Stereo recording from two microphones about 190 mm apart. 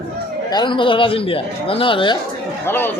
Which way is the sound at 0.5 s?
25° left (ahead or behind).